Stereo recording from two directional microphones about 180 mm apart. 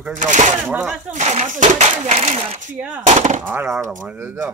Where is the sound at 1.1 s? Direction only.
40° right (ahead or behind).